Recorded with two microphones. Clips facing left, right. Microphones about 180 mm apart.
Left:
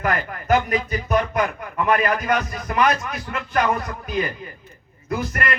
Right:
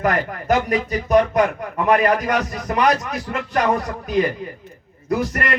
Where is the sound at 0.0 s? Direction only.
40° right (ahead or behind).